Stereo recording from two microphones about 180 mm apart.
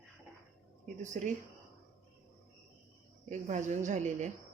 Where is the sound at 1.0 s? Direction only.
45° right (ahead or behind).